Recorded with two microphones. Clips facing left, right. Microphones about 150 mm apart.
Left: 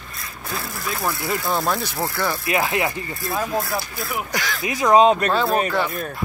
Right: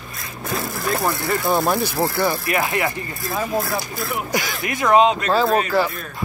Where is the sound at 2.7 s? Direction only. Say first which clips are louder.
Even; 20° left (ahead or behind).